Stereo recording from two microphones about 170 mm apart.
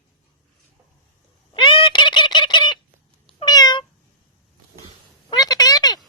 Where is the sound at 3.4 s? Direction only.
25° left (ahead or behind).